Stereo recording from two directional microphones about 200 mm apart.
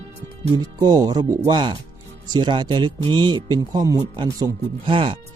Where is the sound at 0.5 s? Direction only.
20° right (ahead or behind).